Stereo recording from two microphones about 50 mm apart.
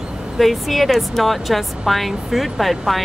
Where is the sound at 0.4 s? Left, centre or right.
Centre.